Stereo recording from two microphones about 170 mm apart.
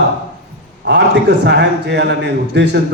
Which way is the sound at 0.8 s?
90° right.